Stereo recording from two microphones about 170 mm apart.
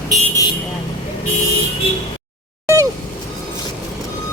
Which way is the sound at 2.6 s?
20° right (ahead or behind).